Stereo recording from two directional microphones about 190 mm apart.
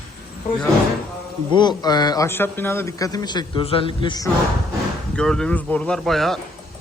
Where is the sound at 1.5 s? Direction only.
20° left (ahead or behind).